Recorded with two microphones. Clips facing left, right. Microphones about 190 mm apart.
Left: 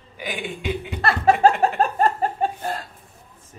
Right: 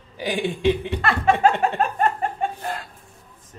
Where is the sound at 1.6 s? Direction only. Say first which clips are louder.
Left 2 dB; 35° left (ahead or behind).